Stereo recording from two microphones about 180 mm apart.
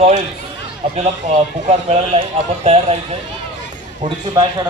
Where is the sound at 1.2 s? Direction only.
40° right (ahead or behind).